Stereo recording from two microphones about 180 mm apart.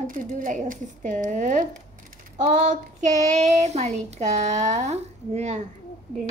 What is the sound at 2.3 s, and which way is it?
Child singing, 40° right (ahead or behind).